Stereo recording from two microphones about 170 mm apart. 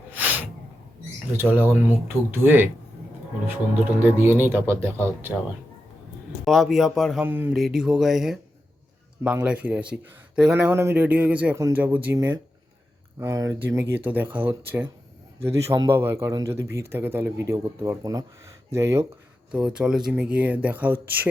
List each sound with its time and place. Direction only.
0.1 s a sound: 10° right (ahead or behind)
1.3 s a man's voice: 10° right (ahead or behind)
6.4 s speech: centre (ahead or behind)
7.2 s a man's voice: 10° right (ahead or behind)
19.5 s a man's voice: 5° right (ahead or behind)